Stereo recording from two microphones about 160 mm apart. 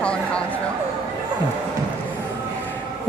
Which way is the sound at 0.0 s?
5° left (ahead or behind).